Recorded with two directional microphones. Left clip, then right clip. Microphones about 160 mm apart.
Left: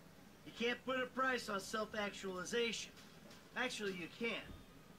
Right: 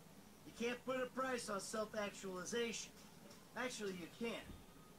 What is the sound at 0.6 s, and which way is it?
Speech, 25° left (ahead or behind).